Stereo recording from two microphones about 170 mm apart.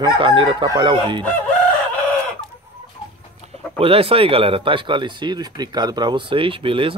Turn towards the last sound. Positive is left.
turn(degrees=-30)  # may be behind; listen again after turning